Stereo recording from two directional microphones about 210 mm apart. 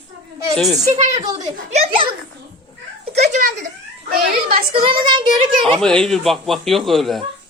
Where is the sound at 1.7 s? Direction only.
30° right (ahead or behind).